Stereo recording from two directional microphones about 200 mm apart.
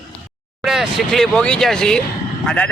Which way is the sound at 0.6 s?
Centre (ahead or behind).